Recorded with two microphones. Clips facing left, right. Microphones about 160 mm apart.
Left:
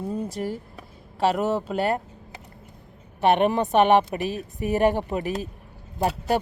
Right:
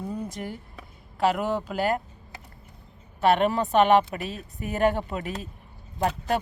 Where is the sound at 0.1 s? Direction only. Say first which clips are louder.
Left 5 dB; 30° left (ahead or behind).